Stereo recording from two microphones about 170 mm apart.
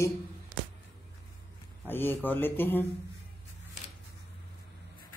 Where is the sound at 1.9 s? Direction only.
10° left (ahead or behind).